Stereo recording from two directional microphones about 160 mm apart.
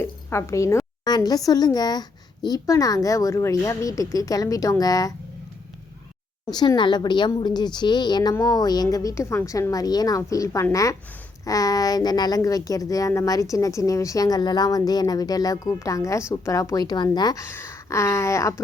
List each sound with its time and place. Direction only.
0.0 s a sound: 15° left (ahead or behind)
1.5 s a woman's voice: 25° left (ahead or behind)
6.4 s a woman's voice: 25° left (ahead or behind)